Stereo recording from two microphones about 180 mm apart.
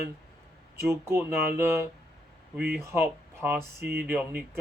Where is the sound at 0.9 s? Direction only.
10° right (ahead or behind).